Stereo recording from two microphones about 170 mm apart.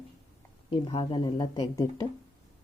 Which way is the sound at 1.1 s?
25° left (ahead or behind).